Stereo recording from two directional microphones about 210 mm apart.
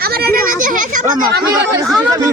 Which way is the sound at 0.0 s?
45° right (ahead or behind).